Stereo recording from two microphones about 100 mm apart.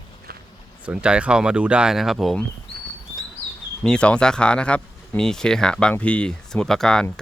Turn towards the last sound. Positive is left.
turn(degrees=5)  # may be behind; listen again after turning